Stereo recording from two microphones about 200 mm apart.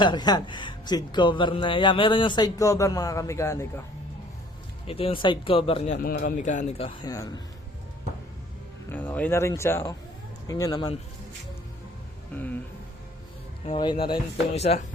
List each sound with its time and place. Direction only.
0.0 s speech: 20° left (ahead or behind)
4.9 s speech: 30° left (ahead or behind)
8.9 s speech: 10° left (ahead or behind)
12.3 s speech: 10° left (ahead or behind)
13.7 s speech: 25° left (ahead or behind)